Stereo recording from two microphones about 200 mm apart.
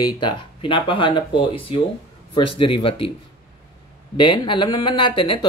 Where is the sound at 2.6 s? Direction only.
25° left (ahead or behind).